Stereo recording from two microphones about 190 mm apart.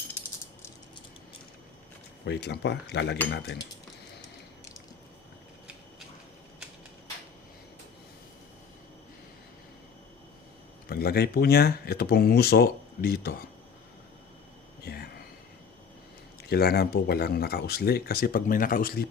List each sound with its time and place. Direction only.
2.2 s speech: 65° left (ahead or behind)
10.8 s speech: 55° left (ahead or behind)
14.9 s a sound: 60° left (ahead or behind)
16.5 s speech: 55° left (ahead or behind)